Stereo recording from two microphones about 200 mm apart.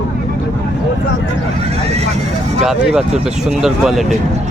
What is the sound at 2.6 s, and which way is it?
Speech, 5° right (ahead or behind).